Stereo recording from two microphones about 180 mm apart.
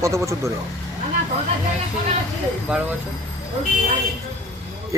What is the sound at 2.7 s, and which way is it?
Speech, 5° right (ahead or behind).